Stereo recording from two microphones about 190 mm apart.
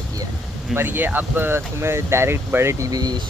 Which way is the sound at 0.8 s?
10° right (ahead or behind).